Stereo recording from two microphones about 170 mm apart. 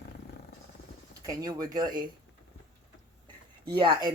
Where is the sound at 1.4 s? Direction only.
20° right (ahead or behind).